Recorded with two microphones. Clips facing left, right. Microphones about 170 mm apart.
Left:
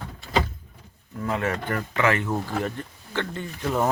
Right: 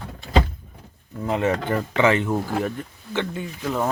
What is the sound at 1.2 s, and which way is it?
Speech, 20° right (ahead or behind).